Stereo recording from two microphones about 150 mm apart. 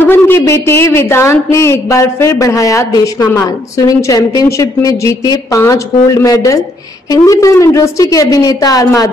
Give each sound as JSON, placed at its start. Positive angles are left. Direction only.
{"t": 0.0, "sound": "a woman's voice", "side_deg": 15}